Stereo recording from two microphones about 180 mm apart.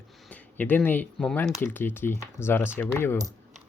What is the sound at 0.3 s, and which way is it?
Speech, 10° left (ahead or behind).